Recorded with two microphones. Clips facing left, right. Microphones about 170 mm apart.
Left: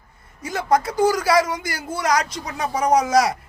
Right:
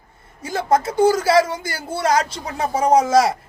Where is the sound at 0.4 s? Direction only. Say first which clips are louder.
Right 1 dB; 30° right (ahead or behind).